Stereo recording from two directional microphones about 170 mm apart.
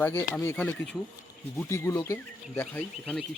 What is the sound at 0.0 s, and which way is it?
Speech, 10° left (ahead or behind).